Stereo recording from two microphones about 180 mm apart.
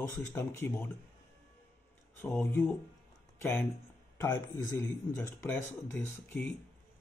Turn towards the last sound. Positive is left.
turn(degrees=10)  # may be behind; listen again after turning